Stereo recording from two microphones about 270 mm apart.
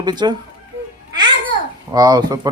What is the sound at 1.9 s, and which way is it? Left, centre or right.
Speech, centre.